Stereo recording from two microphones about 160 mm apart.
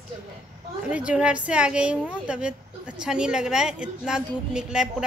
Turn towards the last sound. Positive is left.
turn(degrees=-5)  # may be behind; listen again after turning